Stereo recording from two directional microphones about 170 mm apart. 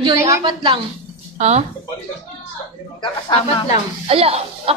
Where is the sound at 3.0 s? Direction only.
25° left (ahead or behind).